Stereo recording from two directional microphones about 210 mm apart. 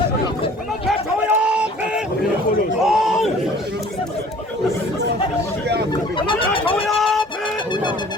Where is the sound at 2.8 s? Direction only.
Centre (ahead or behind).